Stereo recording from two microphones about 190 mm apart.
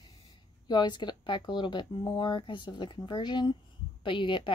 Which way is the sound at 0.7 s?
25° left (ahead or behind).